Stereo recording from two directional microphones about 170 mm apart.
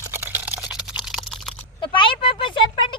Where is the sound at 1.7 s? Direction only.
30° left (ahead or behind).